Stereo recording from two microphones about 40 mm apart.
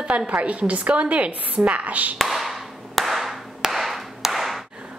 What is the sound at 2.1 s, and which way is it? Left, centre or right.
Clapping, centre.